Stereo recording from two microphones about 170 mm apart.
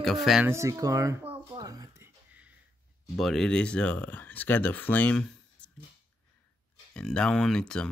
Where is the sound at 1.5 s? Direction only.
20° right (ahead or behind).